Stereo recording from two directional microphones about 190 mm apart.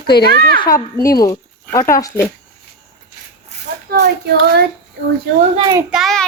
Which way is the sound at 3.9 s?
60° right (ahead or behind).